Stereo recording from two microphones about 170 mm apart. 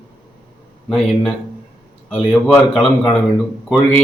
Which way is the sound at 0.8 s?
Centre (ahead or behind).